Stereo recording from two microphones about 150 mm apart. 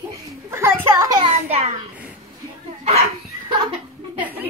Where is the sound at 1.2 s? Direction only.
45° right (ahead or behind).